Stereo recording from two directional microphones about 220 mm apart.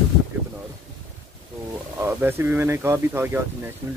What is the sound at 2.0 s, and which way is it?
Speech, 10° right (ahead or behind).